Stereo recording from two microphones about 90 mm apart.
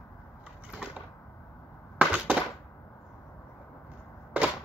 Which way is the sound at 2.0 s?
15° right (ahead or behind).